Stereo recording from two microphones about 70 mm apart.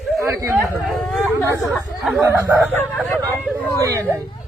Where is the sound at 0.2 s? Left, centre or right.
Right.